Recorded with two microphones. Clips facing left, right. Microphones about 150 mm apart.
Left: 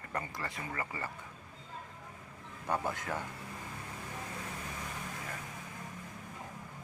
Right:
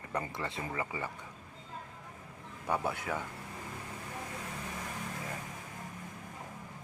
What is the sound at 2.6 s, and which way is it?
Speech, 10° right (ahead or behind).